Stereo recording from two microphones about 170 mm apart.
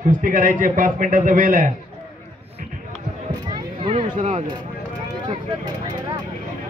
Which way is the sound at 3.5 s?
30° right (ahead or behind).